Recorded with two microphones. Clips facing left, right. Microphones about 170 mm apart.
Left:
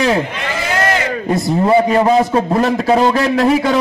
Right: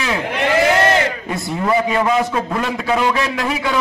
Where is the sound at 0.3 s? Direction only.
60° right (ahead or behind).